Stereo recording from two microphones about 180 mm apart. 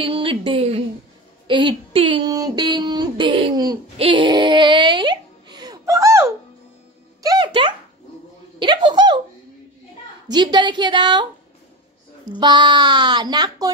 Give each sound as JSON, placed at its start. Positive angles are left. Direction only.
{"t": 0.0, "sound": "a woman's voice", "side_deg": -30}
{"t": 1.5, "sound": "a sound", "side_deg": -25}
{"t": 7.2, "sound": "music", "side_deg": -25}
{"t": 8.5, "sound": "a sound", "side_deg": -25}
{"t": 10.3, "sound": "speech", "side_deg": -25}
{"t": 12.4, "sound": "speech", "side_deg": -25}